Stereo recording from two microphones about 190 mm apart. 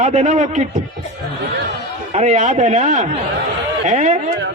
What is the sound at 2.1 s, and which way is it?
A man's voice, 35° right (ahead or behind).